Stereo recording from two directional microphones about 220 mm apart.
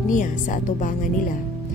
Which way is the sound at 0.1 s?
35° left (ahead or behind).